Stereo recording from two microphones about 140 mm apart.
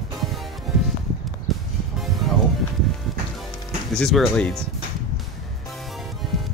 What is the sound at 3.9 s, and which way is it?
Speech, centre (ahead or behind).